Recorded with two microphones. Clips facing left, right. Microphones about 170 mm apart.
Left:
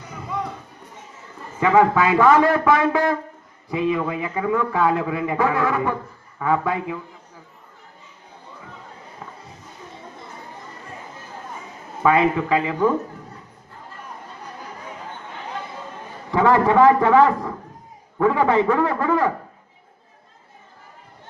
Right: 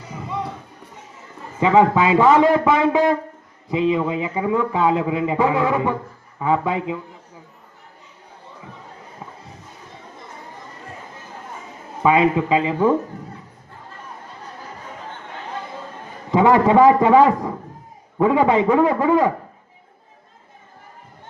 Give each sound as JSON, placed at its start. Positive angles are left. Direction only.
{"t": 1.5, "sound": "a man's voice", "side_deg": -20}
{"t": 12.0, "sound": "a man's voice", "side_deg": -20}
{"t": 16.3, "sound": "a man's voice", "side_deg": -20}